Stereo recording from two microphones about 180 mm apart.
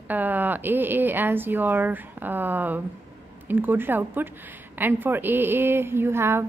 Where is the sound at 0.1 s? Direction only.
10° right (ahead or behind).